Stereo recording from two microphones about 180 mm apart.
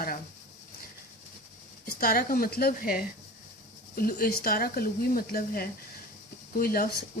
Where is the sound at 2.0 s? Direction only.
55° left (ahead or behind).